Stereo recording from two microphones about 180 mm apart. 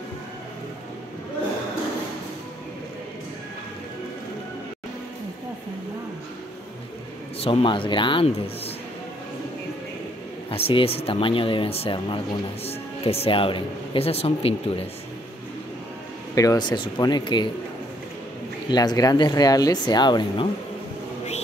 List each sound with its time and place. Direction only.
7.3 s speech: 30° left (ahead or behind)
10.5 s speech: 30° left (ahead or behind)
16.3 s speech: 20° left (ahead or behind)
18.7 s speech: 20° left (ahead or behind)